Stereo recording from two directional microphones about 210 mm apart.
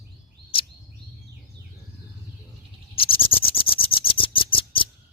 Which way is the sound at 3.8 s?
25° left (ahead or behind).